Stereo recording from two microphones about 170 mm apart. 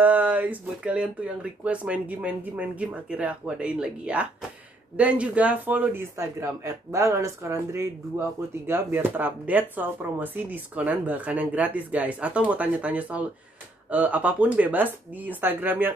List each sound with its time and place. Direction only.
0.0 s speech: 10° right (ahead or behind)